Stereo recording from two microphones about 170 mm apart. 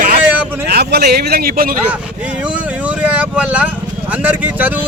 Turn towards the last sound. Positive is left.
turn(degrees=-10)  # may be behind; listen again after turning